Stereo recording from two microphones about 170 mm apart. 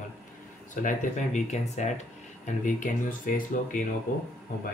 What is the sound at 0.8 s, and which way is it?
Speech, 45° left (ahead or behind).